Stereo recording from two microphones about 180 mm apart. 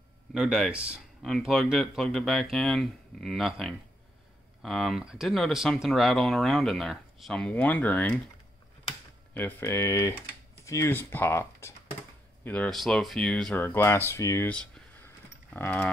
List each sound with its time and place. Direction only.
0.3 s speech: 5° right (ahead or behind)
9.3 s speech: 10° left (ahead or behind)
14.1 s computer keyboard: 15° left (ahead or behind)